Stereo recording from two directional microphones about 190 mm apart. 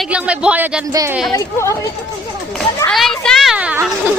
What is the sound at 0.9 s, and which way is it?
Speech, 15° right (ahead or behind).